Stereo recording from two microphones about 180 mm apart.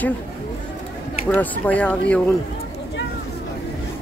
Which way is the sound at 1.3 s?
10° left (ahead or behind).